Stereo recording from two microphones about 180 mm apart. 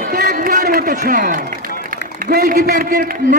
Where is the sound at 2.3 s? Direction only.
50° right (ahead or behind).